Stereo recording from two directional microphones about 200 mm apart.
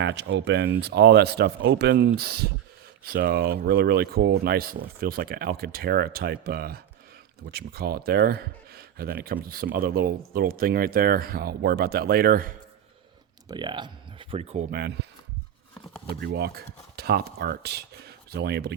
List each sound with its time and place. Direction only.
0.0 s speech: 60° right (ahead or behind); by 12.5 s 45° right (ahead or behind)
13.5 s speech: 25° right (ahead or behind)
14.7 s speech: 50° right (ahead or behind)
16.2 s speech: 55° right (ahead or behind)